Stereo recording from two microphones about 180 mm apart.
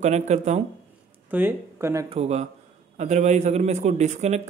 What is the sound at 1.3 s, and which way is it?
Speech, 10° right (ahead or behind).